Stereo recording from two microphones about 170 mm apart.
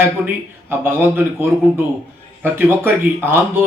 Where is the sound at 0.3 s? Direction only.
10° right (ahead or behind).